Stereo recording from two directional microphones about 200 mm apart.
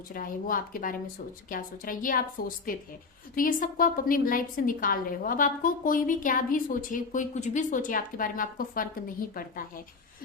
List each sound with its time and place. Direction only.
0.1 s a woman's voice: 45° left (ahead or behind)
3.3 s a woman's voice: 45° left (ahead or behind)